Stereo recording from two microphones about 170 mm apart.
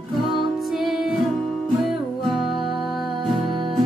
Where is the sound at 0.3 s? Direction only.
Centre (ahead or behind).